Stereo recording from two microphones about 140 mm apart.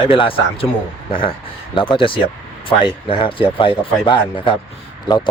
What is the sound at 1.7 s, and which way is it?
Speech, 40° left (ahead or behind).